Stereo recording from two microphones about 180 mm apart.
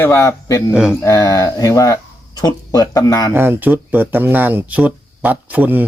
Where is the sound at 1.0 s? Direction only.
20° left (ahead or behind).